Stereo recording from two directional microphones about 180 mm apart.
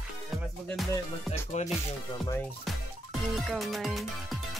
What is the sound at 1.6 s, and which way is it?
Speech, 40° left (ahead or behind).